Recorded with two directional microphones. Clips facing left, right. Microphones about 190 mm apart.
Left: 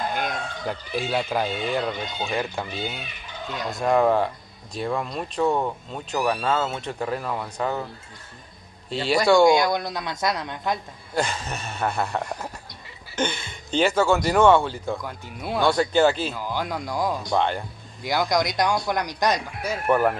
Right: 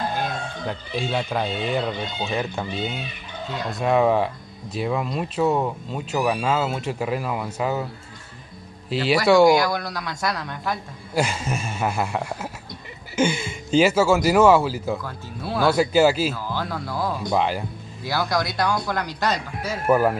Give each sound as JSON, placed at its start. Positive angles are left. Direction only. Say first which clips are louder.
{"t": 0.7, "sound": "speech", "louder": "even", "side_deg": 5}
{"t": 9.5, "sound": "speech", "louder": "right 1 dB", "side_deg": 20}
{"t": 11.1, "sound": "speech", "louder": "right 3 dB", "side_deg": -10}
{"t": 15.0, "sound": "speech", "louder": "right 1 dB", "side_deg": 15}
{"t": 15.6, "sound": "speech", "louder": "right 2 dB", "side_deg": -5}
{"t": 16.3, "sound": "speech", "louder": "even", "side_deg": 15}
{"t": 17.3, "sound": "speech", "louder": "right 3 dB", "side_deg": -5}
{"t": 18.0, "sound": "speech", "louder": "left 1 dB", "side_deg": 15}
{"t": 19.9, "sound": "speech", "louder": "right 2 dB", "side_deg": -5}